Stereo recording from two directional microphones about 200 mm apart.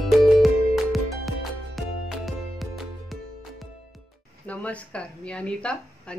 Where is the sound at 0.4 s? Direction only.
Centre (ahead or behind).